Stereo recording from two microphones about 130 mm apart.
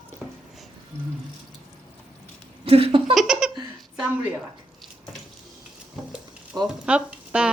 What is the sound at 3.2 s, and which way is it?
Laughter, 5° right (ahead or behind).